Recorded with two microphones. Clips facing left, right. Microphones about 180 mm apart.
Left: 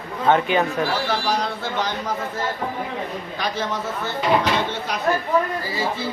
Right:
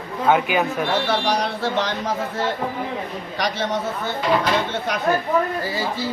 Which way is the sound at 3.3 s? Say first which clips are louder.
Right 2 dB; 75° right (ahead or behind).